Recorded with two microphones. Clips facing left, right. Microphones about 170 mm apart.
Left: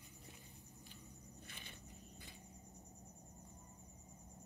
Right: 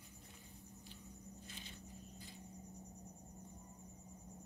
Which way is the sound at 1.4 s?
60° left (ahead or behind).